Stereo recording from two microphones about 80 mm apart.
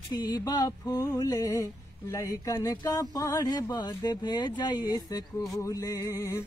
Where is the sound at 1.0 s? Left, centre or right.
Left.